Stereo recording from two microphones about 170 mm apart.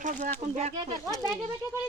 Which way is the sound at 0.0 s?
45° right (ahead or behind).